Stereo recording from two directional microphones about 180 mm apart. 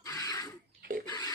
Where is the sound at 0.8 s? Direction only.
50° right (ahead or behind).